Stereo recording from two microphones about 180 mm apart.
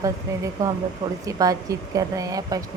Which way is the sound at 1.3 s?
20° right (ahead or behind).